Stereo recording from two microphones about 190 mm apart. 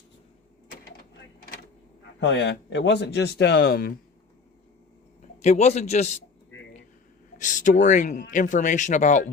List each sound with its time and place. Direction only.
2.2 s speech: 65° left (ahead or behind)
5.4 s speech: 35° left (ahead or behind)
7.3 s speech: 40° left (ahead or behind)